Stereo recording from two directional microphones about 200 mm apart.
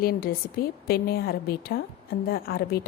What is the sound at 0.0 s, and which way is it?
A woman's voice, 50° left (ahead or behind).